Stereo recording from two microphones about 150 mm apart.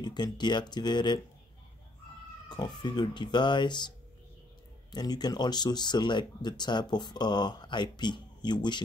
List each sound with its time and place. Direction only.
0.0 s speech: 30° left (ahead or behind)
2.5 s speech: 30° left (ahead or behind)
4.9 s speech: 25° left (ahead or behind)